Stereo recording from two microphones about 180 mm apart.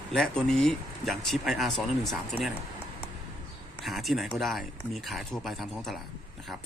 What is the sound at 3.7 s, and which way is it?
Speech, centre (ahead or behind).